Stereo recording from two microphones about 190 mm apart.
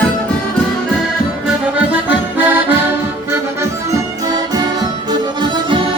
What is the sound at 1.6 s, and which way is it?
Accordion, 10° right (ahead or behind).